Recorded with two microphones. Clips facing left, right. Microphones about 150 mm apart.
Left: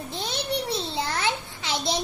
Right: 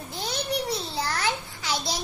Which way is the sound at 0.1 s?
25° left (ahead or behind).